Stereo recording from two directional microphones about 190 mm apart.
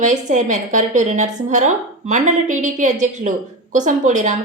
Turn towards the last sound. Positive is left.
turn(degrees=-40)  # may be behind; listen again after turning